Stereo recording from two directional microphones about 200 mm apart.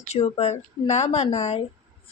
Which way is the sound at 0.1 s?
30° left (ahead or behind).